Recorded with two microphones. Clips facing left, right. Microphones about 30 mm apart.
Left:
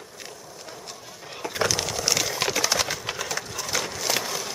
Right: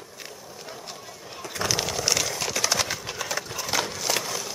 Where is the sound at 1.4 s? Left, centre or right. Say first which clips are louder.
Left 4 dB; centre.